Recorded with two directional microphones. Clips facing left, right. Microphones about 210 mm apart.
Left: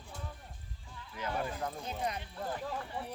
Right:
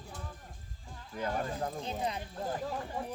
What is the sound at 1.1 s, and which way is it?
Speech, 45° right (ahead or behind).